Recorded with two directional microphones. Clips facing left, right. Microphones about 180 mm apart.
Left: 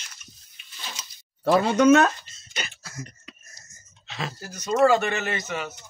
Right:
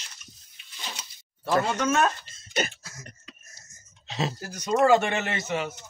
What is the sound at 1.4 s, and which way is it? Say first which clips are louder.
Speech: left 7 dB; 65° left (ahead or behind).